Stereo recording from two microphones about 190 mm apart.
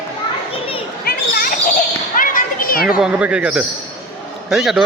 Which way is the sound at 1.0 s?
50° left (ahead or behind).